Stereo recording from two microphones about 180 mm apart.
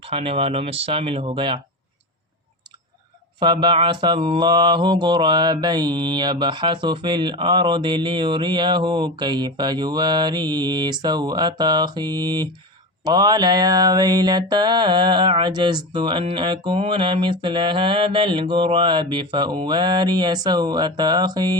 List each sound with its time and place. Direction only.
0.0 s speech: 30° right (ahead or behind)
3.4 s mantra: 25° right (ahead or behind)